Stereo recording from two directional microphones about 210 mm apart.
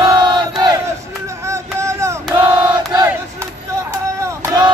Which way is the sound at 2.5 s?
15° right (ahead or behind).